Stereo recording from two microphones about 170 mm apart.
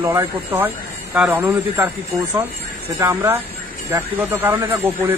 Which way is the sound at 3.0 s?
15° right (ahead or behind).